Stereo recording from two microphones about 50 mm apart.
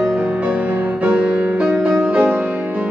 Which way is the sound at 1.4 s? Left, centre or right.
Right.